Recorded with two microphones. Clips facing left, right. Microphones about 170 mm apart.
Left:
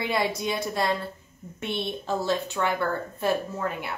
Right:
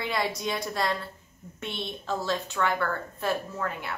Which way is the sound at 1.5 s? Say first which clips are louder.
Left 5 dB; 15° left (ahead or behind).